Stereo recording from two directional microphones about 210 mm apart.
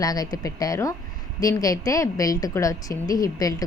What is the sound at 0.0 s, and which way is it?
A woman's voice, 15° left (ahead or behind).